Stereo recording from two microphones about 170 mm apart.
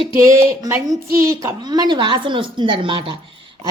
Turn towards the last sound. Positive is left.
turn(degrees=-30)  # may be behind; listen again after turning